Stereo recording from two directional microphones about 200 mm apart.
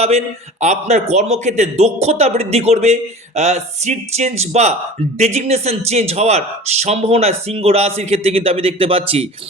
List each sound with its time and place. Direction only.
0.6 s speech: 35° right (ahead or behind)